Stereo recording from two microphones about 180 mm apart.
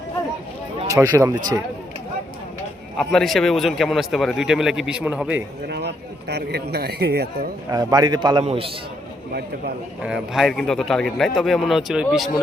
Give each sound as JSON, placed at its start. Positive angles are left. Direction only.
{"t": 0.9, "sound": "speech", "side_deg": -20}
{"t": 3.0, "sound": "a man's voice", "side_deg": 0}
{"t": 5.6, "sound": "a man's voice", "side_deg": -65}
{"t": 7.7, "sound": "a man's voice", "side_deg": -20}
{"t": 10.0, "sound": "a man's voice", "side_deg": -5}